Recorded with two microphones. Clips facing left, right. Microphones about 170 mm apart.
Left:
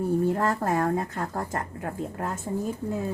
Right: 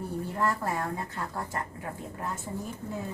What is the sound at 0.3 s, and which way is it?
Speech, 50° left (ahead or behind).